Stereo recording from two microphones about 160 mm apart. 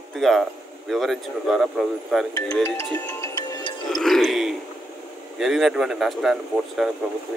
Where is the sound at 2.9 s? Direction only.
20° left (ahead or behind).